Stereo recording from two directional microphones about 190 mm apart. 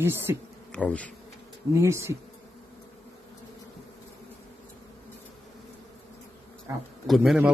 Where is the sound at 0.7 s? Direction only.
5° left (ahead or behind).